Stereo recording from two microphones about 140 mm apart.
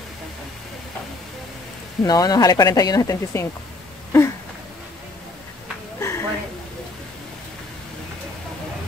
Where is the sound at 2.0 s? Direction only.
25° left (ahead or behind).